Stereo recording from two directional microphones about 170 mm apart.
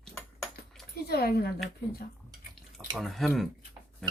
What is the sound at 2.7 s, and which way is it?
Speech, centre (ahead or behind).